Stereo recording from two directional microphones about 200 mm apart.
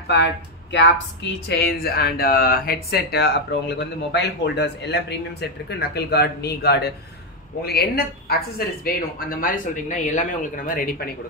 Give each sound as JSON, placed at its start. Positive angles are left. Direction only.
{"t": 0.1, "sound": "speech", "side_deg": 65}
{"t": 1.5, "sound": "speech", "side_deg": 50}